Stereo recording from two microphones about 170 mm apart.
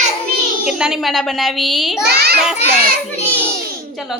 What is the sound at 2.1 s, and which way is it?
Child singing, 70° right (ahead or behind).